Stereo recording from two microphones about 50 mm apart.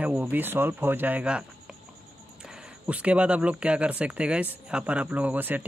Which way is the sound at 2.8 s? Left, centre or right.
Right.